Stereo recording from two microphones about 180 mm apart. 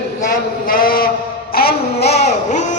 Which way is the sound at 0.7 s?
55° left (ahead or behind).